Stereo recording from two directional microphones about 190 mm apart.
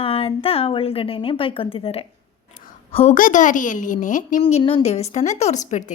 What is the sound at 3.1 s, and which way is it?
A woman's voice, 45° left (ahead or behind).